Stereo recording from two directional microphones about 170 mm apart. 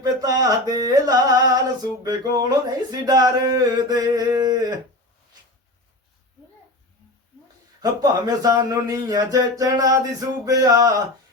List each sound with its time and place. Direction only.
0.0 s speech: 25° right (ahead or behind)
7.8 s speech: 20° right (ahead or behind)